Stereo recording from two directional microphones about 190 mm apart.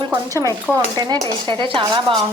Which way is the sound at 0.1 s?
15° right (ahead or behind).